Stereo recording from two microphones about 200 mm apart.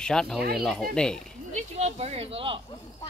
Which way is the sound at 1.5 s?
30° right (ahead or behind).